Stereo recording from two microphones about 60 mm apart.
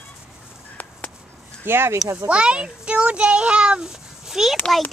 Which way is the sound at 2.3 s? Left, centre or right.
Centre.